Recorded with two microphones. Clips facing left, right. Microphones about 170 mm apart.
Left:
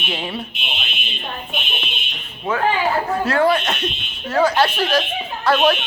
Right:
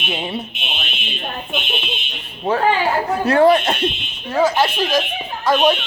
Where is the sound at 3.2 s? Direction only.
25° right (ahead or behind).